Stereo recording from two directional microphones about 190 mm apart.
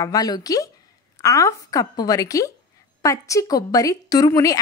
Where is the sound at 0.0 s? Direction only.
20° left (ahead or behind).